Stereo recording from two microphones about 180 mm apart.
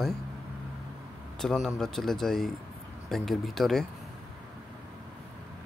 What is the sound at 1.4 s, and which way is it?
Speech, centre (ahead or behind).